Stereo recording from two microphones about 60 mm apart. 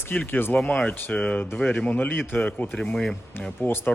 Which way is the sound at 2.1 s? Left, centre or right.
Left.